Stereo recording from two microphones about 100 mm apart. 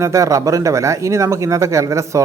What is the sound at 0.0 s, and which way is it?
Speech, 30° right (ahead or behind).